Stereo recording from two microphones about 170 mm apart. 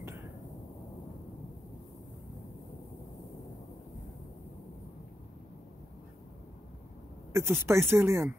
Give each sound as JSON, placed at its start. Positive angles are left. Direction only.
{"t": 7.3, "sound": "speech", "side_deg": -15}